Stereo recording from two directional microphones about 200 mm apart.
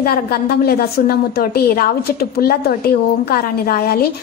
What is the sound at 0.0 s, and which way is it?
A woman's voice, 50° left (ahead or behind).